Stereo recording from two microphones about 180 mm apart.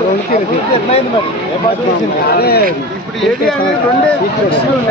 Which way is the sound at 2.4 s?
60° left (ahead or behind).